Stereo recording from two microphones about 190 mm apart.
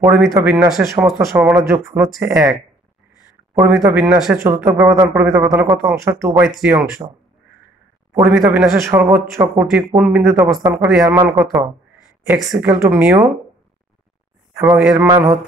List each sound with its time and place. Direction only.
0.0 s speech: 10° right (ahead or behind)
3.5 s speech: 10° right (ahead or behind)
5.0 s a man's voice: centre (ahead or behind)
5.3 s speech: 15° right (ahead or behind)
6.4 s a man's voice: centre (ahead or behind)
8.1 s speech: 15° right (ahead or behind)
12.3 s a man's voice: centre (ahead or behind)
12.5 s speech: 15° right (ahead or behind)
14.6 s speech: 10° right (ahead or behind)